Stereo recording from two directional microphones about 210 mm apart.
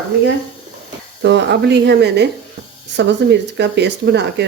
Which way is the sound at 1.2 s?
55° right (ahead or behind).